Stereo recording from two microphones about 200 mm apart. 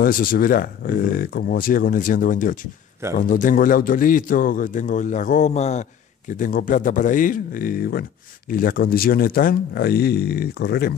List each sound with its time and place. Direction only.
0.0 s a man's voice: 45° left (ahead or behind)